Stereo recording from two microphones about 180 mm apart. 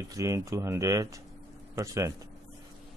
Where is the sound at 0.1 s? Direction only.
20° right (ahead or behind).